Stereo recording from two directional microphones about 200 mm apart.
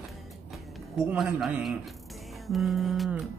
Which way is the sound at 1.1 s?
Centre (ahead or behind).